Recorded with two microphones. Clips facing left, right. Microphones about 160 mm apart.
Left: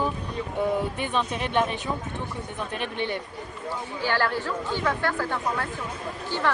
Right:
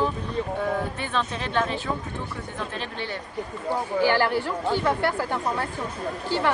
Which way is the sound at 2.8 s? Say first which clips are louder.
Left 3 dB; 20° left (ahead or behind).